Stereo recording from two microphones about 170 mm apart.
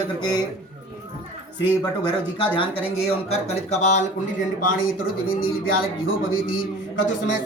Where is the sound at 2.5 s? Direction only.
35° left (ahead or behind).